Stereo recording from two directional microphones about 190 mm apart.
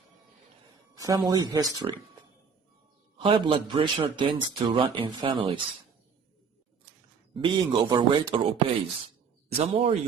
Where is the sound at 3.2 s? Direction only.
25° right (ahead or behind).